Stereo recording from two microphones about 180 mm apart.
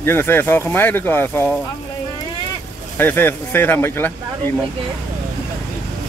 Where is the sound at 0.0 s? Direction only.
10° left (ahead or behind).